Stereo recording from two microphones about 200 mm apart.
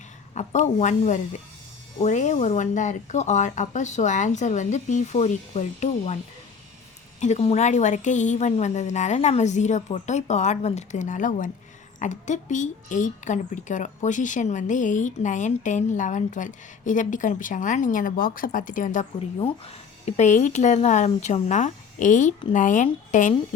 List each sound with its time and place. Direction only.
0.3 s a woman's voice: 35° left (ahead or behind)
7.2 s a woman's voice: 35° left (ahead or behind)